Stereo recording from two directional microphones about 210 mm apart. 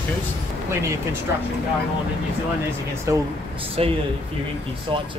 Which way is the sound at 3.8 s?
30° right (ahead or behind).